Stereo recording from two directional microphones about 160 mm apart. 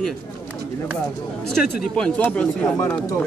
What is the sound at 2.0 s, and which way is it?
Speech, 5° left (ahead or behind).